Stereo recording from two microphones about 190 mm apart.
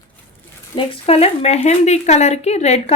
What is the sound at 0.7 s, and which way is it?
A woman's voice, 30° left (ahead or behind).